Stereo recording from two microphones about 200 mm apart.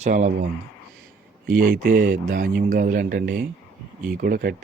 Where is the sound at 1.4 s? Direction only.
45° right (ahead or behind).